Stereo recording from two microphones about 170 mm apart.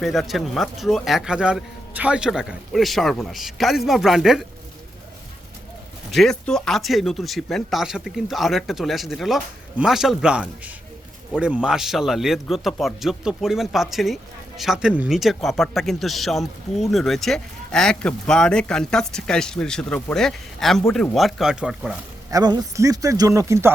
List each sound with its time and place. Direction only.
0.0 s speech: centre (ahead or behind)
6.1 s speech: centre (ahead or behind)
22.3 s a man's voice: 20° right (ahead or behind)